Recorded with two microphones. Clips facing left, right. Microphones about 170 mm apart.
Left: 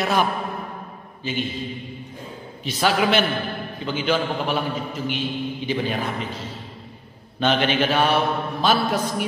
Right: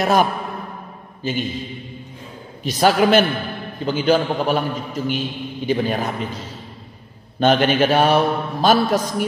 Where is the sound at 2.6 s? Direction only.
45° right (ahead or behind).